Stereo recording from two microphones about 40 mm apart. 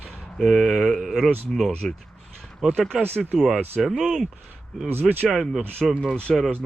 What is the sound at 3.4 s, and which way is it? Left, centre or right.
Speech, centre.